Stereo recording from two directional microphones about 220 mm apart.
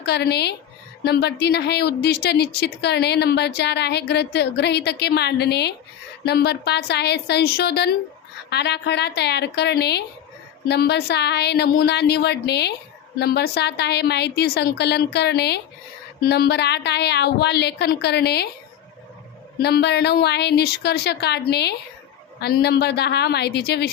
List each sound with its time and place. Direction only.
0.0 s a woman's voice: 50° left (ahead or behind)
19.6 s a woman's voice: 50° left (ahead or behind)